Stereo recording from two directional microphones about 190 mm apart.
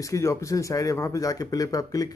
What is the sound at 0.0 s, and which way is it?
Speech, 15° left (ahead or behind).